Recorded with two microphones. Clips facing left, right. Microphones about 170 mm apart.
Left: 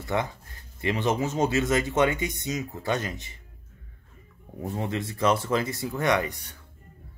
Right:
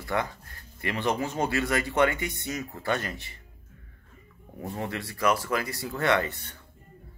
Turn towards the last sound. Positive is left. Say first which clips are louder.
# left 1 dB
turn(degrees=15)  # may be behind; listen again after turning